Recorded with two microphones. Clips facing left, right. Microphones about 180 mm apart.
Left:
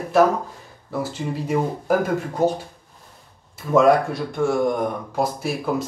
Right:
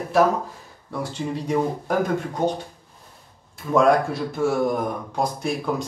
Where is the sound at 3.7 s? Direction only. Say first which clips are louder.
Left 2 dB; centre (ahead or behind).